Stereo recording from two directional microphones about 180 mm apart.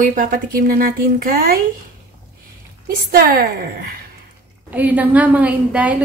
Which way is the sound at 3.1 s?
55° right (ahead or behind).